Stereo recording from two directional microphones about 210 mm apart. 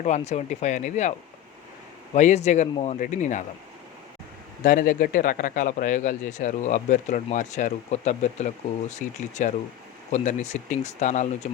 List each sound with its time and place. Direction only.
0.0 s speech: 30° left (ahead or behind)
2.1 s speech: 35° left (ahead or behind)
4.6 s speech: 40° left (ahead or behind)